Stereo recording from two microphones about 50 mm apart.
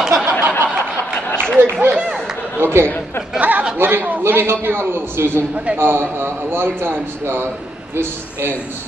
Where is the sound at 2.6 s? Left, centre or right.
Right.